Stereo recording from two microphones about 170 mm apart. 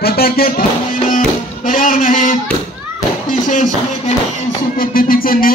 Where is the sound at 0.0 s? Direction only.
65° left (ahead or behind).